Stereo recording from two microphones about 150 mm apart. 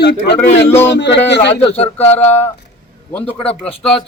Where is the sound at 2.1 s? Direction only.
15° left (ahead or behind).